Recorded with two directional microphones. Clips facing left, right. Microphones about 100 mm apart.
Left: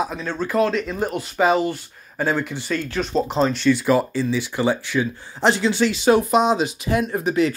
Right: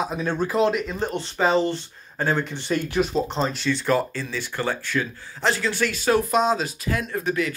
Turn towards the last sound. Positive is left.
turn(degrees=25)  # may be behind; listen again after turning